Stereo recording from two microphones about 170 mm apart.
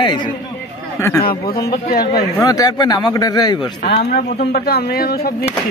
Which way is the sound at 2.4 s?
20° left (ahead or behind).